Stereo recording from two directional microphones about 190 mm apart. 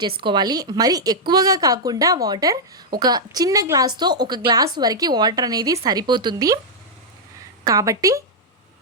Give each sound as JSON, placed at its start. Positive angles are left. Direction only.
{"t": 0.2, "sound": "a woman's voice", "side_deg": -25}
{"t": 7.6, "sound": "speech", "side_deg": -20}